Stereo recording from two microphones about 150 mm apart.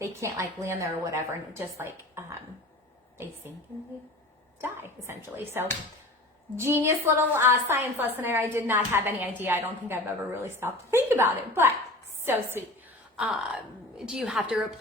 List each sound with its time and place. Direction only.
0.0 s a woman's voice: 20° right (ahead or behind)
4.6 s a woman's voice: 15° right (ahead or behind)